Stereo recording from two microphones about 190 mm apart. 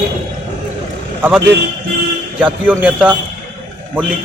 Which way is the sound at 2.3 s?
10° right (ahead or behind).